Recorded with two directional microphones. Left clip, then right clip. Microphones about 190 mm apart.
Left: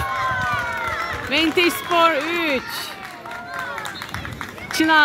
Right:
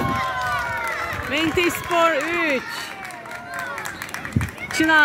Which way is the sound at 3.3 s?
50° right (ahead or behind).